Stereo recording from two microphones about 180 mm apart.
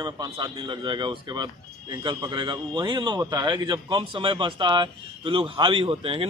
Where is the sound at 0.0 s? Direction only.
25° right (ahead or behind).